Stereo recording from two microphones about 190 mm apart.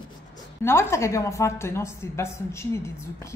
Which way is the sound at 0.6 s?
15° left (ahead or behind).